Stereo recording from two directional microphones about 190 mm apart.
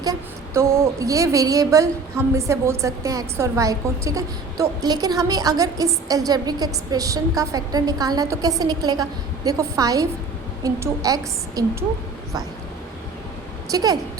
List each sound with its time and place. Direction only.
0.0 s a woman's voice: 15° right (ahead or behind)
13.7 s a woman's voice: 20° right (ahead or behind)